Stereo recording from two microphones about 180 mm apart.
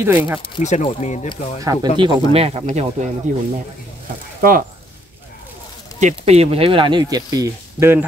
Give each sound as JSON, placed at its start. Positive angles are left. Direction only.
{"t": 0.0, "sound": "speech", "side_deg": -10}
{"t": 0.6, "sound": "speech", "side_deg": 40}
{"t": 1.6, "sound": "speech", "side_deg": -20}
{"t": 2.0, "sound": "speech", "side_deg": -30}
{"t": 5.9, "sound": "speech", "side_deg": -40}